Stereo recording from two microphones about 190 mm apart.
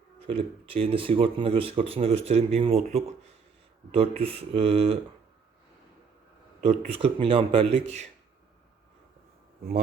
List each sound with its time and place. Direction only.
0.2 s speech: 30° right (ahead or behind)
6.6 s speech: 30° right (ahead or behind)